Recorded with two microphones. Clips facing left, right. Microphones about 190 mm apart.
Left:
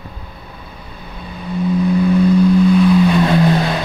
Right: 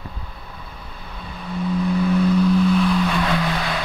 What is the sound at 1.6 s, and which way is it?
Vehicle, 20° left (ahead or behind).